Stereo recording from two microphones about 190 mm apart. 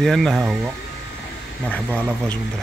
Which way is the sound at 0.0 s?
Centre (ahead or behind).